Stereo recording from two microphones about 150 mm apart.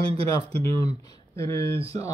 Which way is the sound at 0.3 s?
25° left (ahead or behind).